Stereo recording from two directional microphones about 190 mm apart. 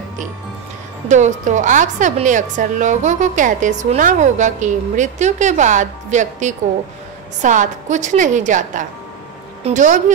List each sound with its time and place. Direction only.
1.0 s a woman's voice: 40° right (ahead or behind)